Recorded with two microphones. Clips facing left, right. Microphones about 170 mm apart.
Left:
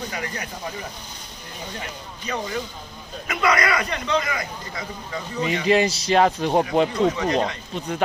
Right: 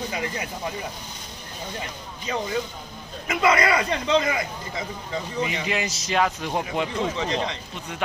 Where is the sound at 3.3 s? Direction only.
25° right (ahead or behind).